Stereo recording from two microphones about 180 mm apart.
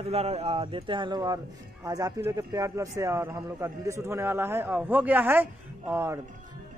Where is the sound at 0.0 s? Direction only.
35° right (ahead or behind); by 6.1 s 10° right (ahead or behind).